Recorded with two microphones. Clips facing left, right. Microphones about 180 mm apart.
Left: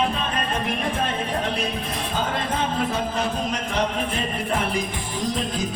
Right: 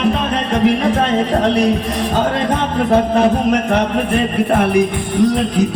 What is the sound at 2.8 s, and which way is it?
Music, 65° right (ahead or behind).